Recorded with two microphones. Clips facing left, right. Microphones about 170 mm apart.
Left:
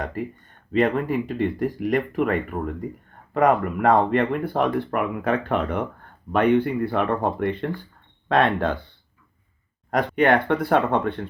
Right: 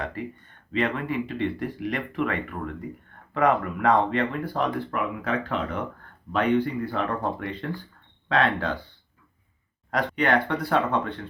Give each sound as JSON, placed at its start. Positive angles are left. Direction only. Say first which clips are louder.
{"t": 0.0, "sound": "speech", "louder": "left 3 dB", "side_deg": 45}
{"t": 9.9, "sound": "speech", "louder": "left 4 dB", "side_deg": 50}